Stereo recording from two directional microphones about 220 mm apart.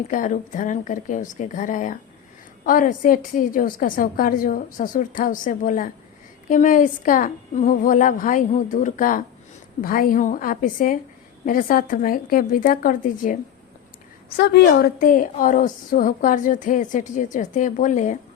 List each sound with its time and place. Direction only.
0.1 s a woman's voice: 35° left (ahead or behind)